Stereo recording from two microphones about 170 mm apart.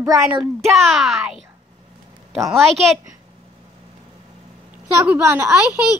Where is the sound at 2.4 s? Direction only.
Centre (ahead or behind).